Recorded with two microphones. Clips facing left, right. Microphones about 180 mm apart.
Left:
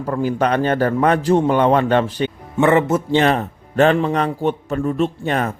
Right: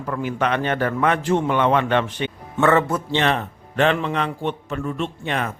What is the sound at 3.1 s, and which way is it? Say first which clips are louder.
A man's voice: left 5 dB; 40° left (ahead or behind).